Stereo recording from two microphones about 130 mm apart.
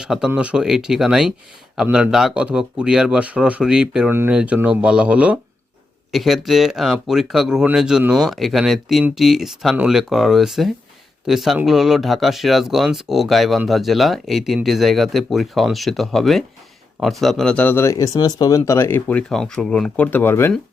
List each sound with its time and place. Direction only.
0.0 s speech: 5° right (ahead or behind)
4.1 s speech: 15° right (ahead or behind); by 20.5 s 15° left (ahead or behind)